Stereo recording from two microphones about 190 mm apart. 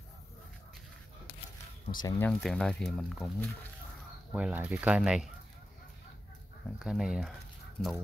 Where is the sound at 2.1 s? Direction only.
10° left (ahead or behind); by 5.3 s 5° right (ahead or behind).